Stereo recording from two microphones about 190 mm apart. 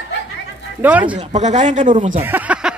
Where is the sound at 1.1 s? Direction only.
35° right (ahead or behind).